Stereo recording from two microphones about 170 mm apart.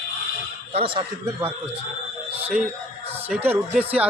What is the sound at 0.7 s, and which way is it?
Speech, 35° right (ahead or behind).